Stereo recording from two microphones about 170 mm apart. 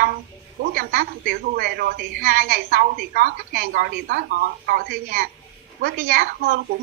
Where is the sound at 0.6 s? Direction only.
60° right (ahead or behind).